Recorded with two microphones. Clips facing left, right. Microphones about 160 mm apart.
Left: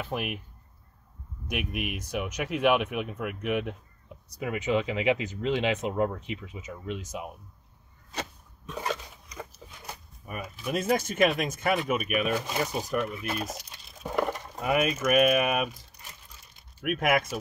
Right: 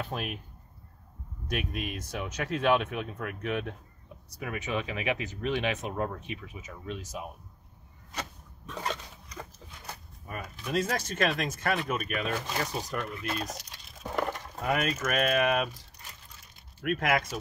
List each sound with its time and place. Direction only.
0.1 s speech: 10° left (ahead or behind)
1.5 s speech: 15° left (ahead or behind)
8.6 s speech: 10° left (ahead or behind)
16.8 s speech: 10° left (ahead or behind)